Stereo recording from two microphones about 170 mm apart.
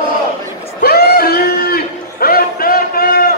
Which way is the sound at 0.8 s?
70° left (ahead or behind).